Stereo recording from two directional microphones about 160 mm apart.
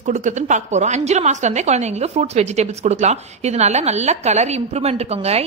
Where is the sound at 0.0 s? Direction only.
50° right (ahead or behind).